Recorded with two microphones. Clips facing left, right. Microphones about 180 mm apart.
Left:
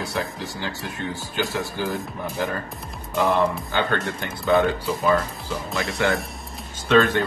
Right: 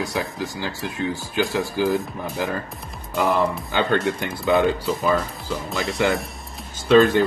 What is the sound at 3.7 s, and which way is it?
Speech, 15° right (ahead or behind).